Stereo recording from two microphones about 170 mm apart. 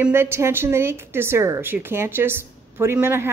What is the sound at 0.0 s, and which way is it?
A woman's voice, 15° right (ahead or behind).